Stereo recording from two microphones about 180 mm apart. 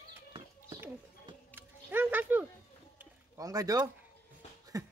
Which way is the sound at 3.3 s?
20° right (ahead or behind).